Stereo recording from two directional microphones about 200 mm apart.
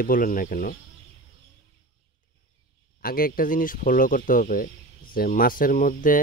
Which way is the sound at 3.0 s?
45° left (ahead or behind).